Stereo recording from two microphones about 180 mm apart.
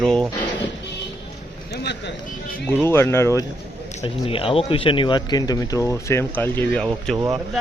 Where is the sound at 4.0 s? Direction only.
30° left (ahead or behind); by 7.1 s 5° left (ahead or behind).